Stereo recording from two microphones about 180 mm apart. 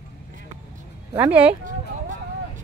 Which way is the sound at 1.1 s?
10° right (ahead or behind).